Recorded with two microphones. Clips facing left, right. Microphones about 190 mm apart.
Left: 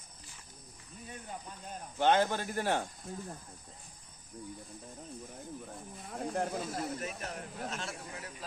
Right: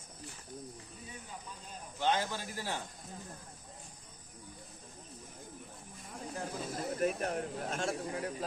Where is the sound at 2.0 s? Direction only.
55° left (ahead or behind).